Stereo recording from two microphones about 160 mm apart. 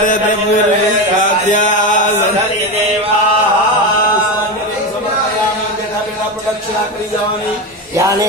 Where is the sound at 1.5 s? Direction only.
50° left (ahead or behind).